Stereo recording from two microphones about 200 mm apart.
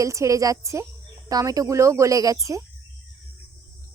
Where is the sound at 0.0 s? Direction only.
15° right (ahead or behind).